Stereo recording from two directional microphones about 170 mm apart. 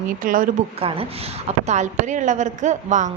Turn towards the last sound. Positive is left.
turn(degrees=-45)  # may be behind; listen again after turning